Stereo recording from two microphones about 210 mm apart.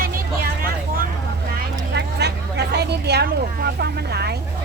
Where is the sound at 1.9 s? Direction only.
50° right (ahead or behind).